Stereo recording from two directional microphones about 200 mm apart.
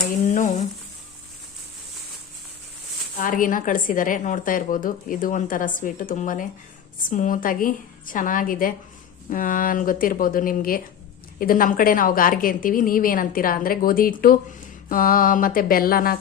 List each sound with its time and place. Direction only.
0.3 s sizzle: 35° left (ahead or behind)
3.2 s a woman's voice: 40° left (ahead or behind)